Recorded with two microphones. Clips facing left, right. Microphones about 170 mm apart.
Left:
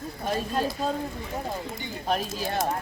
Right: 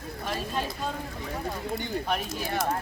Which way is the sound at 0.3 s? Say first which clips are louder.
Left 5 dB; 40° left (ahead or behind).